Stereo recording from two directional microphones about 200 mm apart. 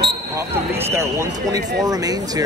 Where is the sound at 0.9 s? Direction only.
15° right (ahead or behind).